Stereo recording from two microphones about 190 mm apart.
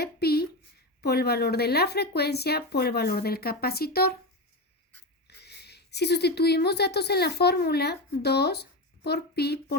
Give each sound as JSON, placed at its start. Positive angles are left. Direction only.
{"t": 0.0, "sound": "a sound", "side_deg": 55}
{"t": 1.0, "sound": "speech", "side_deg": 55}
{"t": 5.4, "sound": "speech", "side_deg": 60}